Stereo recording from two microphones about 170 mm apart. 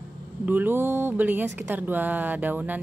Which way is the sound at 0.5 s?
10° right (ahead or behind).